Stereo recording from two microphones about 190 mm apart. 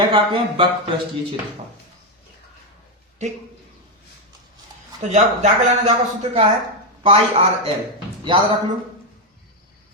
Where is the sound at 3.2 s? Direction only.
35° right (ahead or behind).